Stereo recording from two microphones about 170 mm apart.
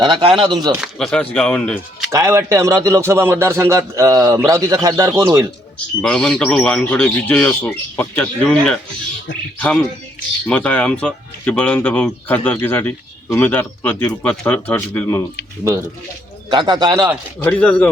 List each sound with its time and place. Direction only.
0.0 s speech: 30° right (ahead or behind)
0.8 s speech: 5° left (ahead or behind)
2.0 s a man's voice: 15° right (ahead or behind)
6.0 s speech: 5° left (ahead or behind)
16.5 s speech: 25° right (ahead or behind)
17.4 s speech: 5° left (ahead or behind)